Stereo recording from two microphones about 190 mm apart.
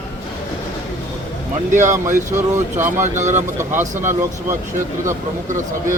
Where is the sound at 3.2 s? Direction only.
40° right (ahead or behind).